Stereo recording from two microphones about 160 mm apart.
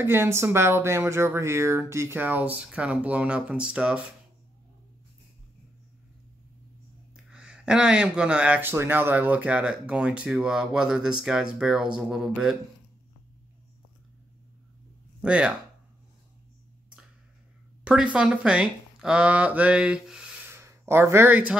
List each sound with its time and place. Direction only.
0.0 s speech: 15° right (ahead or behind)
7.2 s speech: 5° right (ahead or behind)
15.2 s speech: 10° right (ahead or behind)
17.8 s speech: 5° right (ahead or behind)
20.4 s a sound: 15° right (ahead or behind)